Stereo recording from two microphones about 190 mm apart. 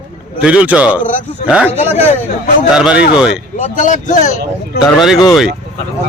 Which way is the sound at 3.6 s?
40° left (ahead or behind).